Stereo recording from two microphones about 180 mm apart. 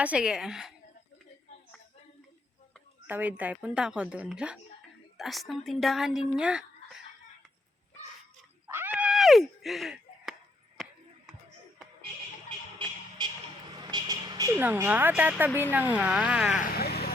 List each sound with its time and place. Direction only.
0.0 s speech: 5° right (ahead or behind)
3.1 s a woman's voice: 10° right (ahead or behind)
8.7 s cat: 10° right (ahead or behind)
13.7 s vehicle: 25° right (ahead or behind)
14.6 s a woman's voice: 10° right (ahead or behind)
16.7 s vehicle: 60° left (ahead or behind)